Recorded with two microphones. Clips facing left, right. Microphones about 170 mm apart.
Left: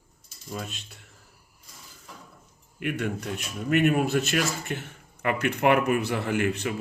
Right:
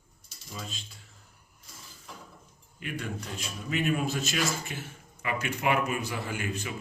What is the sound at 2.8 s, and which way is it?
Speech, 60° left (ahead or behind).